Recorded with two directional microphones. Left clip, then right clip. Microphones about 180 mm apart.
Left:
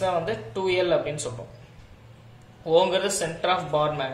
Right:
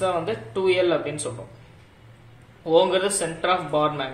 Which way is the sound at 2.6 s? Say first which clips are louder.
Right 2 dB; 15° right (ahead or behind).